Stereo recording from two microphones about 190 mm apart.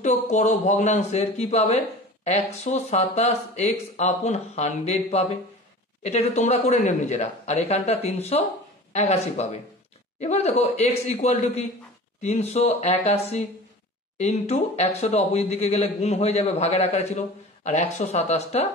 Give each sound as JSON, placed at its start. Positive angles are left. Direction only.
{"t": 0.0, "sound": "a man's voice", "side_deg": 40}